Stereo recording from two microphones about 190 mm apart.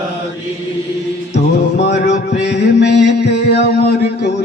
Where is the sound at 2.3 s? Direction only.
60° left (ahead or behind).